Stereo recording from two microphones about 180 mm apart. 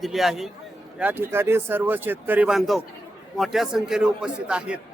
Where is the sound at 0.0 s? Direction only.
Centre (ahead or behind).